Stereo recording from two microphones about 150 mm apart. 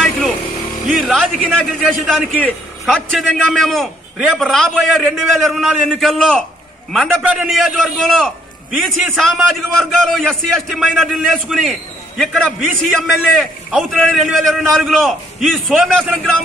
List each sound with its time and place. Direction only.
1.0 s a man's voice: centre (ahead or behind)